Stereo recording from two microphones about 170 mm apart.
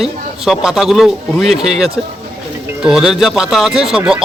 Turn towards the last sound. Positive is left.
turn(degrees=-5)  # may be behind; listen again after turning